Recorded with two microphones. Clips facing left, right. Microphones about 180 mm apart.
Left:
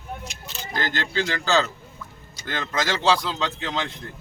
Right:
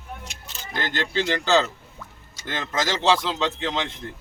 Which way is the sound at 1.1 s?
20° right (ahead or behind).